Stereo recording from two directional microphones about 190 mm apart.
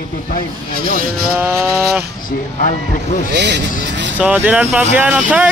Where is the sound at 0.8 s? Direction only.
50° right (ahead or behind).